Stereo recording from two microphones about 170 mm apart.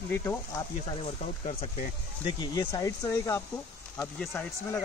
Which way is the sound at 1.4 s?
35° left (ahead or behind).